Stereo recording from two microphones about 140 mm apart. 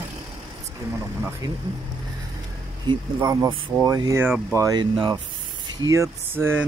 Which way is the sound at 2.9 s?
25° right (ahead or behind).